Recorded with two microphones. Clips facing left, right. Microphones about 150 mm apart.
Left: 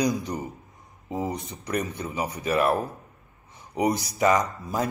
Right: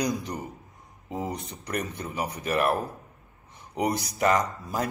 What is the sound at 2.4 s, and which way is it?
Speech, centre (ahead or behind).